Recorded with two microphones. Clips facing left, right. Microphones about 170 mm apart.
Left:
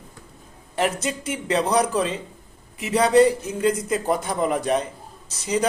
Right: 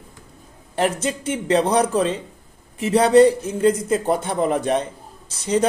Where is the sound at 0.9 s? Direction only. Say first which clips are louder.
Right 3 dB; 30° right (ahead or behind).